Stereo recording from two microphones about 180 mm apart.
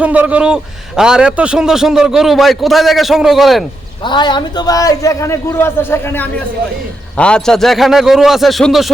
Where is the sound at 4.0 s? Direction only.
25° left (ahead or behind); by 8.9 s centre (ahead or behind).